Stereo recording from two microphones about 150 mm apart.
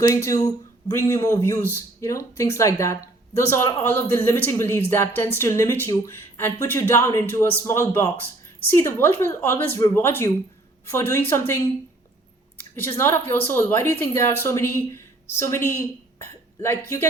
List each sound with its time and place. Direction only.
0.1 s speech: 20° left (ahead or behind)
12.8 s speech: 15° left (ahead or behind)